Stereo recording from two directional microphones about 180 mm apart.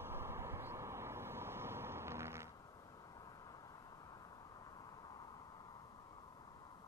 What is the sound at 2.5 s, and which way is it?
Vehicle, 20° left (ahead or behind).